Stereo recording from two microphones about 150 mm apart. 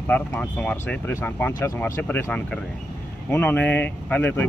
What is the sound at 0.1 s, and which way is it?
Speech, 10° left (ahead or behind).